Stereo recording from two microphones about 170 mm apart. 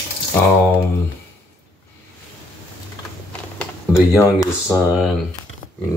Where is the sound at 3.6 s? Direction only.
15° left (ahead or behind).